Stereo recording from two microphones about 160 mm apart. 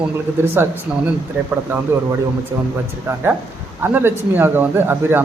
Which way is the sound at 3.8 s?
15° right (ahead or behind).